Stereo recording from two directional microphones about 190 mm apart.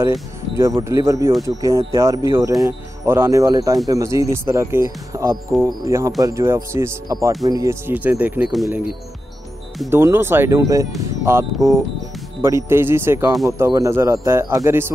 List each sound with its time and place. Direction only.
0.0 s speech: 15° right (ahead or behind)
9.8 s speech: 10° right (ahead or behind)